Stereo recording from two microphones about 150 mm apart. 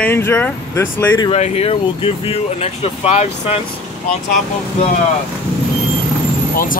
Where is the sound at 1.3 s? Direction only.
45° left (ahead or behind).